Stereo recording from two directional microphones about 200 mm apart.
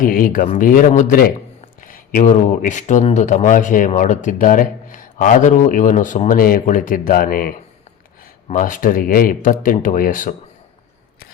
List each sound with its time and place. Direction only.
0.0 s speech: 45° left (ahead or behind)